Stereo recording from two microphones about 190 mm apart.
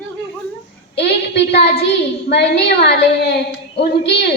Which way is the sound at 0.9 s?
60° left (ahead or behind).